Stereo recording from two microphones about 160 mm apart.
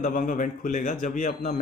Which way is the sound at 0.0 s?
55° left (ahead or behind).